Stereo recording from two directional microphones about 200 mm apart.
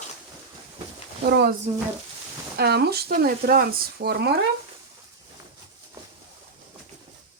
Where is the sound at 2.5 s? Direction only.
55° right (ahead or behind).